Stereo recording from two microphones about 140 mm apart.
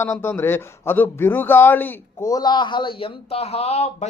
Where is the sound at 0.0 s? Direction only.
15° left (ahead or behind).